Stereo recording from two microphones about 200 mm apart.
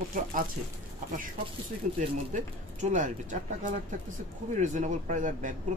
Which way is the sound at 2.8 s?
40° right (ahead or behind).